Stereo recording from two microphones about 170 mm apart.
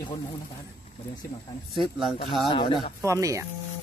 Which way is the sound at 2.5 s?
30° left (ahead or behind).